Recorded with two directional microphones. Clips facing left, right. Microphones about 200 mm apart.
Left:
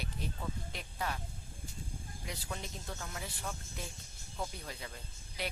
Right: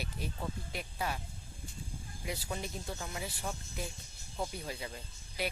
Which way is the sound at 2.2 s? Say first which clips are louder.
Right 5 dB; 10° right (ahead or behind).